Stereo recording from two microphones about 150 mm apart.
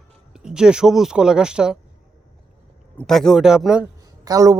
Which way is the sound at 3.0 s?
5° left (ahead or behind).